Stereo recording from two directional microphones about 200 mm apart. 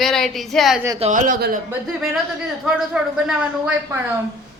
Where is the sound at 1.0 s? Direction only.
40° right (ahead or behind).